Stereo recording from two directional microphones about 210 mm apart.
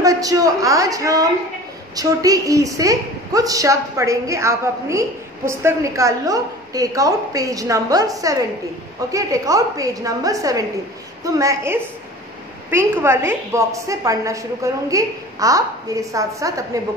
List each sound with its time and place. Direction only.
0.0 s a woman's voice: 15° right (ahead or behind)